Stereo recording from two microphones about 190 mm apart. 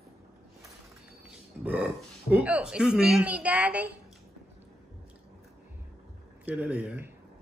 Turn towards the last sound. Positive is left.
turn(degrees=-10)  # may be behind; listen again after turning